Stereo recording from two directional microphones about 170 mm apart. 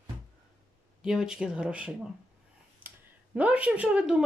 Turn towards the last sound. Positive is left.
turn(degrees=-5)  # may be behind; listen again after turning